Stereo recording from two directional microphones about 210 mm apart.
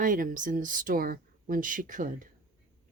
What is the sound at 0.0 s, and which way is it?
Speech, 40° right (ahead or behind).